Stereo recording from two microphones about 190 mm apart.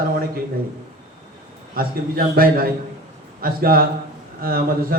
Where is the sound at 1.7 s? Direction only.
50° right (ahead or behind).